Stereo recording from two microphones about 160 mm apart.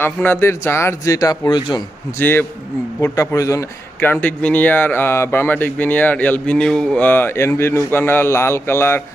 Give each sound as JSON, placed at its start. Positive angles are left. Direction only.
{"t": 0.0, "sound": "a man's voice", "side_deg": 15}
{"t": 2.1, "sound": "a man's voice", "side_deg": 15}